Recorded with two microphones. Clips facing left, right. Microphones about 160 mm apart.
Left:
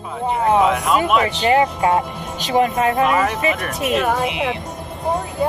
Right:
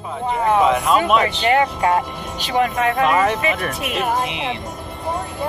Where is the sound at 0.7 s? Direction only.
5° left (ahead or behind).